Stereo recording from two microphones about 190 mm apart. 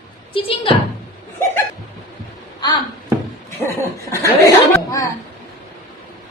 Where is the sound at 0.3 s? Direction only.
30° left (ahead or behind).